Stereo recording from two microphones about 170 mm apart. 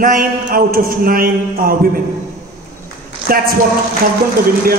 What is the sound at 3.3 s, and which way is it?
Speech, 60° right (ahead or behind).